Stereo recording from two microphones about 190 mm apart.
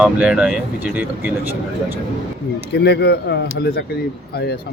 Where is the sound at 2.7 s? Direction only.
60° left (ahead or behind).